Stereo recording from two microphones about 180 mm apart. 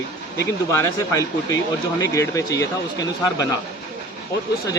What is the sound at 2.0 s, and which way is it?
Speech, 15° left (ahead or behind).